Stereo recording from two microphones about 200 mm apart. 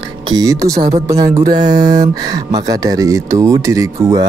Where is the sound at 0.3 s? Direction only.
20° right (ahead or behind).